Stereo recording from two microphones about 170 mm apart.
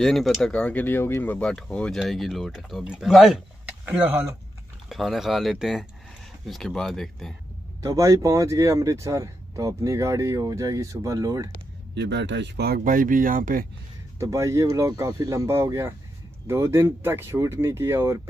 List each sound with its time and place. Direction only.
0.0 s speech: centre (ahead or behind)
3.8 s speech: 10° right (ahead or behind)
4.8 s speech: centre (ahead or behind)
7.8 s speech: 20° right (ahead or behind)
11.9 s speech: 90° right; by 13.7 s 55° right (ahead or behind)
14.1 s speech: 20° right (ahead or behind)